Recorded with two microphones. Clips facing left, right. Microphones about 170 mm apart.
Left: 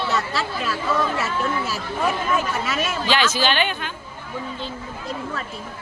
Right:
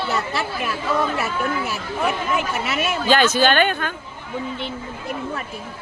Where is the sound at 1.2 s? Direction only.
60° right (ahead or behind).